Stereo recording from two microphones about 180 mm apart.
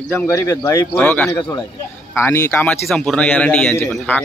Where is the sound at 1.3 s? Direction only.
25° left (ahead or behind).